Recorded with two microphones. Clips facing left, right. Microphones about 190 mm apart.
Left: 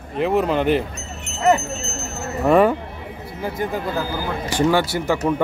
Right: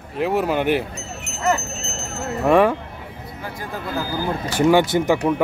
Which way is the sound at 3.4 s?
25° left (ahead or behind).